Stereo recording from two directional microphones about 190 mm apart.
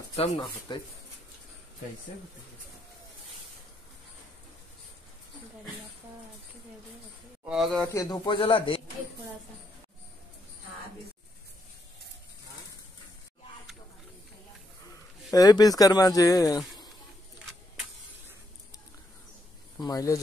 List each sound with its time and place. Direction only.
0.1 s speech: 30° left (ahead or behind)
7.4 s a man's voice: centre (ahead or behind)
7.9 s speech: 20° left (ahead or behind)
15.3 s speech: 20° left (ahead or behind)
19.8 s speech: 20° left (ahead or behind)